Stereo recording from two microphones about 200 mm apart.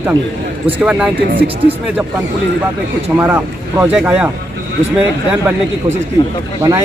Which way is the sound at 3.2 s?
10° right (ahead or behind).